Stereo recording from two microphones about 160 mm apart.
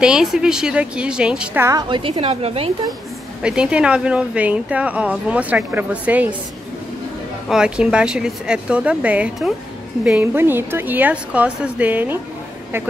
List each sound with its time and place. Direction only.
0.0 s speech: 5° right (ahead or behind)
1.8 s a woman's voice: 30° right (ahead or behind)
3.4 s speech: 5° right (ahead or behind)
7.4 s speech: 5° right (ahead or behind)